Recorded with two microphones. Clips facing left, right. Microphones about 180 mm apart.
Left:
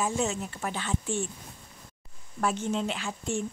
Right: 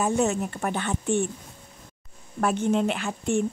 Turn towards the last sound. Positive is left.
turn(degrees=-60)  # may be behind; listen again after turning